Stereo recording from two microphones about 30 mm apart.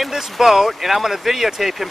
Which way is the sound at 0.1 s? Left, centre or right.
Centre.